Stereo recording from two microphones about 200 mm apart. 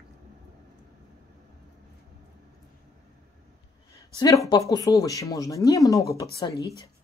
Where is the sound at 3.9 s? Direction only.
20° left (ahead or behind).